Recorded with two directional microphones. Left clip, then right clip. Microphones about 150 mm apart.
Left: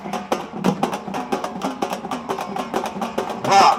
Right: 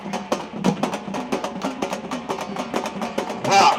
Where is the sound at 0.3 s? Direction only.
50° left (ahead or behind).